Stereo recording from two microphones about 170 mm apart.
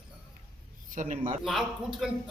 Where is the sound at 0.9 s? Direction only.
45° right (ahead or behind).